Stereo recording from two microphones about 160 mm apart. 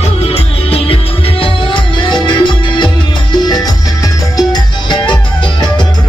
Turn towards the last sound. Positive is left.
turn(degrees=25)  # may be behind; listen again after turning